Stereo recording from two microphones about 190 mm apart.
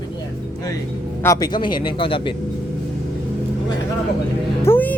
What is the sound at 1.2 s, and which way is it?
Speech, 20° left (ahead or behind).